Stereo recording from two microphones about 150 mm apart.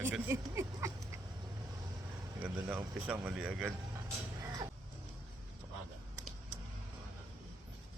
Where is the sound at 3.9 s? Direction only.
20° right (ahead or behind).